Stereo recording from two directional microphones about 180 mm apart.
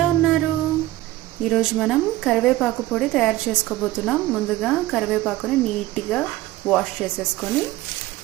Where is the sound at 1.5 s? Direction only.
Centre (ahead or behind).